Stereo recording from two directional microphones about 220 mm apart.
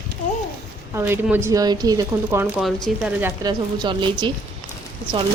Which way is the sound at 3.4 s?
20° right (ahead or behind).